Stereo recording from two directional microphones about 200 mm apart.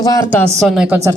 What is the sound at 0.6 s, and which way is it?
Speech, centre (ahead or behind).